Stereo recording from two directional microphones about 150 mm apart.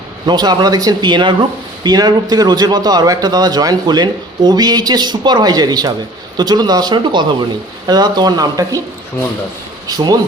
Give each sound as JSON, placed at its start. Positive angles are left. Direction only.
{"t": 0.3, "sound": "a man's voice", "side_deg": -25}
{"t": 9.8, "sound": "speech", "side_deg": -25}